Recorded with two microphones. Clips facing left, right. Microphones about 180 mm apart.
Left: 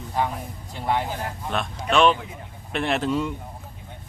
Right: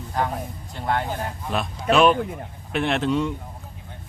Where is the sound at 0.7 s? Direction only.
5° left (ahead or behind).